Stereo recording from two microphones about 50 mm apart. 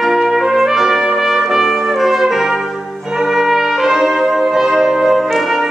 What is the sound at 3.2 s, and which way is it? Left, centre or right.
Trumpet, centre.